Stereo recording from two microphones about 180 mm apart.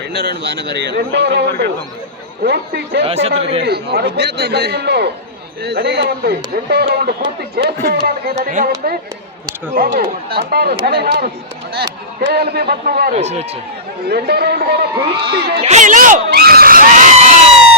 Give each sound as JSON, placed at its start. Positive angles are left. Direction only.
{"t": 0.1, "sound": "a man's voice", "side_deg": -70}
{"t": 3.0, "sound": "speech", "side_deg": -35}
{"t": 3.6, "sound": "a man's voice", "side_deg": -65}
{"t": 8.4, "sound": "speech", "side_deg": -45}
{"t": 12.3, "sound": "speech", "side_deg": -65}
{"t": 13.1, "sound": "speech", "side_deg": -40}
{"t": 14.1, "sound": "speech", "side_deg": -65}
{"t": 15.6, "sound": "speech", "side_deg": -40}
{"t": 16.3, "sound": "screaming", "side_deg": -60}